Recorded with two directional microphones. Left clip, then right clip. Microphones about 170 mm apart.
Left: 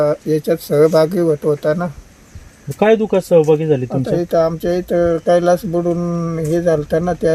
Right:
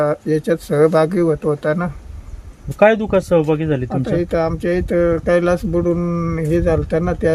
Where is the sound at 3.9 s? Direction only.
5° left (ahead or behind).